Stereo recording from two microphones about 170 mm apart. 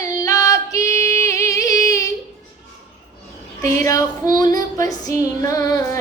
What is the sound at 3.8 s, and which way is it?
Female singing, 20° left (ahead or behind).